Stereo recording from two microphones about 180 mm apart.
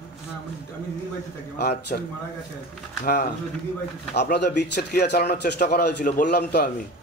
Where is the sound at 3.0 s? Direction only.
55° left (ahead or behind).